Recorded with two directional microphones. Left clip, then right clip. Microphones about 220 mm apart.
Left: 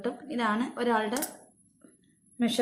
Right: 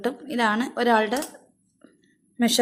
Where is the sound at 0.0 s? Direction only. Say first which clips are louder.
Right 6 dB; 50° right (ahead or behind).